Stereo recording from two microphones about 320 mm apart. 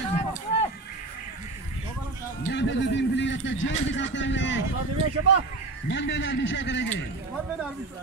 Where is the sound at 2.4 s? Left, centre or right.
Left.